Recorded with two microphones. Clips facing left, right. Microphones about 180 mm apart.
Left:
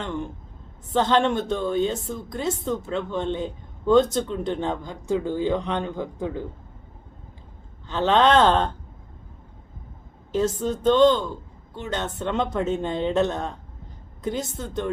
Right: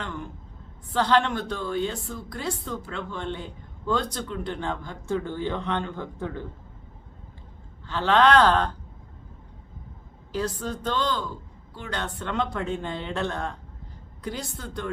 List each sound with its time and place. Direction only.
0.0 s a woman's voice: 25° left (ahead or behind)
7.9 s a woman's voice: 20° left (ahead or behind)
10.6 s a woman's voice: 20° left (ahead or behind)